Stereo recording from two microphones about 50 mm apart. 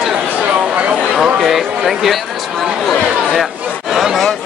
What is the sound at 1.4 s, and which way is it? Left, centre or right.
Speech, centre.